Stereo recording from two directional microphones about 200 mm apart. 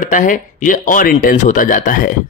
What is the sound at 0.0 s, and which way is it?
Speech, 40° left (ahead or behind).